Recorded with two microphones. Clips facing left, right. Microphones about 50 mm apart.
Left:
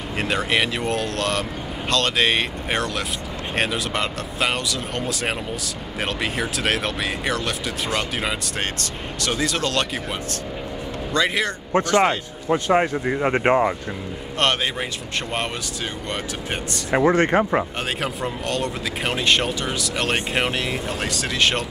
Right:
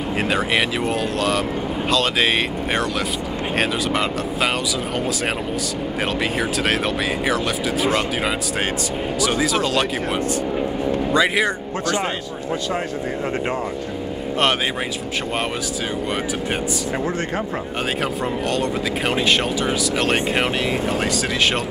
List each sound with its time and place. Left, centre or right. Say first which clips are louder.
0.2 s speech: right 1 dB; centre
6.3 s speech: right 3 dB; centre
11.1 s speech: right 2 dB; centre
11.7 s speech: left 4 dB; left
16.9 s speech: left 10 dB; left
18.0 s speech: right 3 dB; centre